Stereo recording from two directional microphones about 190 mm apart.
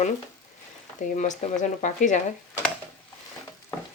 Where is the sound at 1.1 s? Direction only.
40° left (ahead or behind).